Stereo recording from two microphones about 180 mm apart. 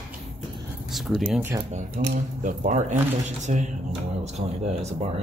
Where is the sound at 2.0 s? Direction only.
40° right (ahead or behind).